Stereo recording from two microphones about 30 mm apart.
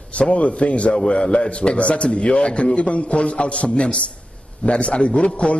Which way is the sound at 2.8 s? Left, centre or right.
Left.